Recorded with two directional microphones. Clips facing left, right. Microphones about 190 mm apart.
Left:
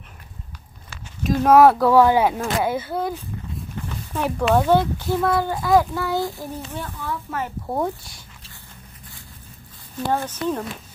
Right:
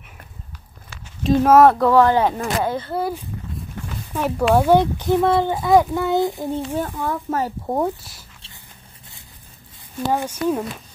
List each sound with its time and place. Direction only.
1.4 s speech: centre (ahead or behind)
4.1 s speech: 5° right (ahead or behind); by 6.6 s 20° right (ahead or behind)
6.7 s speech: 45° right (ahead or behind)
7.6 s speech: 10° right (ahead or behind)
10.1 s speech: 10° right (ahead or behind)